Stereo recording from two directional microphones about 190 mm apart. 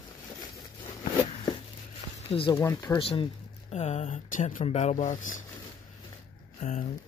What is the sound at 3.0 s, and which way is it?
Speech, 30° left (ahead or behind).